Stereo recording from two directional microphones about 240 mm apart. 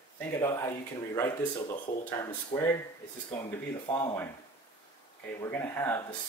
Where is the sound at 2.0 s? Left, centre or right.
Centre.